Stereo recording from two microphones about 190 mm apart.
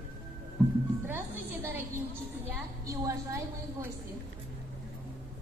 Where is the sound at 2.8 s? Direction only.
15° right (ahead or behind).